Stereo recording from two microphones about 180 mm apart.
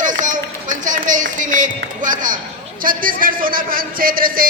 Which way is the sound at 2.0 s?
45° right (ahead or behind).